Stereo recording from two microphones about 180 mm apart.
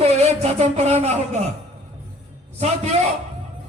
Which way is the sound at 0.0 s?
35° right (ahead or behind).